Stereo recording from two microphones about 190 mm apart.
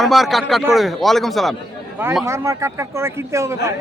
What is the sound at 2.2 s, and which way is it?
Speech, 15° right (ahead or behind).